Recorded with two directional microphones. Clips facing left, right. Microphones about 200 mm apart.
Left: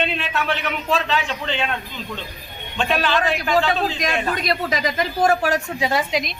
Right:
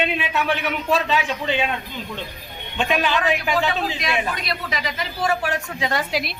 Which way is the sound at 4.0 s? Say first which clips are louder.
Left 2 dB; 45° left (ahead or behind).